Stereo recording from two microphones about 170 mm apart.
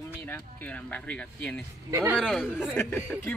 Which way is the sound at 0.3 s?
10° left (ahead or behind).